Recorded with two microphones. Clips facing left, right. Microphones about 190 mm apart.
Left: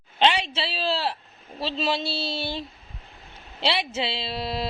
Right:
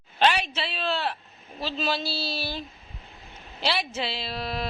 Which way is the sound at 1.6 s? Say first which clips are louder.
Left 2 dB; 25° left (ahead or behind).